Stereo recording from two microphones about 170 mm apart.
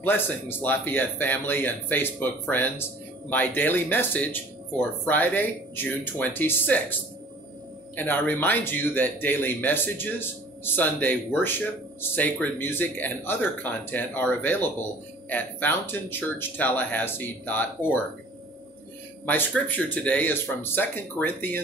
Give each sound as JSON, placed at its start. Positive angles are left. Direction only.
{"t": 0.0, "sound": "speech", "side_deg": 10}
{"t": 19.2, "sound": "speech", "side_deg": 10}